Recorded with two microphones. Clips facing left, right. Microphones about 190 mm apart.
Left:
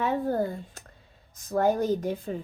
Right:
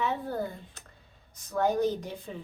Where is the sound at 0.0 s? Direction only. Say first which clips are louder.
Left 5 dB; 50° left (ahead or behind).